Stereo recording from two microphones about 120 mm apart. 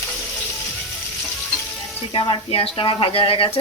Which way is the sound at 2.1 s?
45° left (ahead or behind).